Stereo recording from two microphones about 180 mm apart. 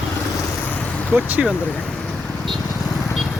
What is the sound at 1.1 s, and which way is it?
Speech, 10° right (ahead or behind).